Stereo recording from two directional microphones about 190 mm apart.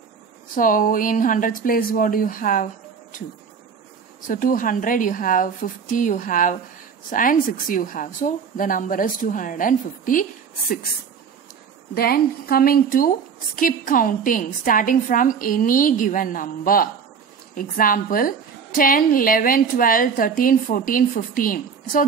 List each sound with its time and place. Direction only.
0.6 s a woman's voice: 45° left (ahead or behind)
4.3 s a woman's voice: 45° left (ahead or behind)
11.9 s a woman's voice: 55° left (ahead or behind)